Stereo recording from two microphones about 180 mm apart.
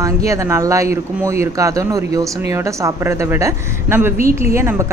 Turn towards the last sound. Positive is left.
turn(degrees=-15)  # may be behind; listen again after turning